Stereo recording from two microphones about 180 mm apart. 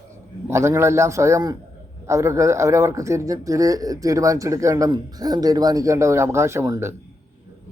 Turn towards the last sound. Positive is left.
turn(degrees=-15)  # may be behind; listen again after turning